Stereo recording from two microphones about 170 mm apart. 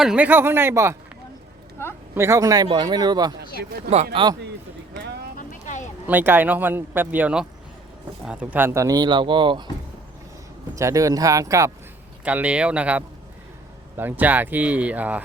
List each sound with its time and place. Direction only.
0.0 s speech: 5° right (ahead or behind)
2.1 s speech: 15° right (ahead or behind)
5.4 s vehicle: 50° left (ahead or behind)
6.1 s speech: 10° right (ahead or behind); by 9.6 s 30° right (ahead or behind)
10.8 s speech: 20° right (ahead or behind)
12.2 s speech: 10° right (ahead or behind)